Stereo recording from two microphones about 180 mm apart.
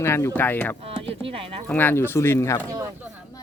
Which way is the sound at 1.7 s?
10° left (ahead or behind).